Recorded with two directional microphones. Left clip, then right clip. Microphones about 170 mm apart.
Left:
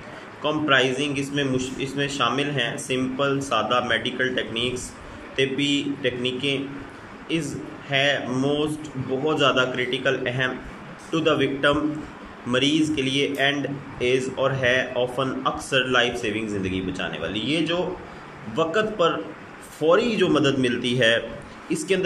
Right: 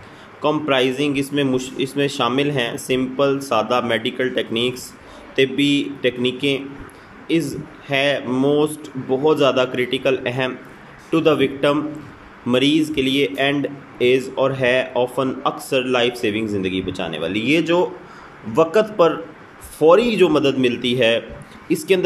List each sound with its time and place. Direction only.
0.4 s speech: 25° right (ahead or behind)